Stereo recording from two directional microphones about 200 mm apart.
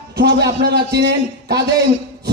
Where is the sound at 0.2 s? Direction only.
55° right (ahead or behind).